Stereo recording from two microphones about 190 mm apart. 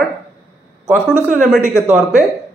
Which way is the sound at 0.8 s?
5° right (ahead or behind).